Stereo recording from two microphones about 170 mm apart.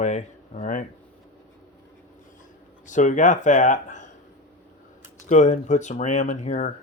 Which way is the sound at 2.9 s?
45° left (ahead or behind).